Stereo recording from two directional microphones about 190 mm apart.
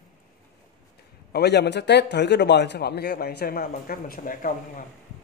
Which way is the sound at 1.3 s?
60° left (ahead or behind).